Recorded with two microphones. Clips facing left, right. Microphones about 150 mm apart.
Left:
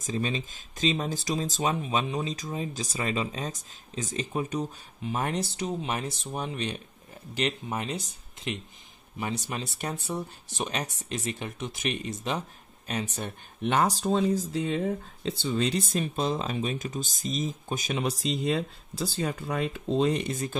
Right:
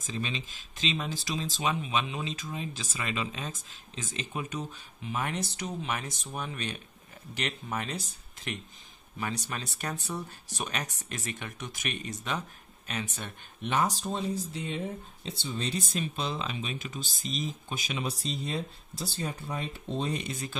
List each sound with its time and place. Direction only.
0.0 s speech: 45° left (ahead or behind); by 8.0 s 25° left (ahead or behind)
9.2 s speech: 20° left (ahead or behind)
10.5 s speech: 25° left (ahead or behind)
13.7 s speech: 70° left (ahead or behind); by 15.8 s 90° left
15.8 s speech: 50° left (ahead or behind)
18.2 s speech: 90° left
20.2 s speech: 50° left (ahead or behind)